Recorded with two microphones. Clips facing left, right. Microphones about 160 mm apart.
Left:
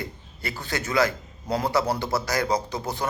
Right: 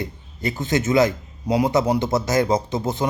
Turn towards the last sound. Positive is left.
turn(degrees=-20)  # may be behind; listen again after turning